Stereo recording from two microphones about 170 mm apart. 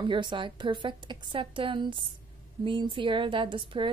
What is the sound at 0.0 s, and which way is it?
A woman's voice, 30° right (ahead or behind).